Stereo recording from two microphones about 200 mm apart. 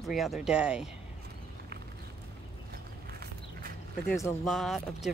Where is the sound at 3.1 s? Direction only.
50° right (ahead or behind).